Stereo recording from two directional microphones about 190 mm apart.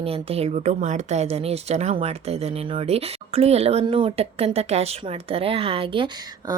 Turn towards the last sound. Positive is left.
turn(degrees=-25)  # may be behind; listen again after turning